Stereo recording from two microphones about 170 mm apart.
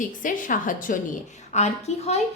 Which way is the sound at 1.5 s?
40° left (ahead or behind).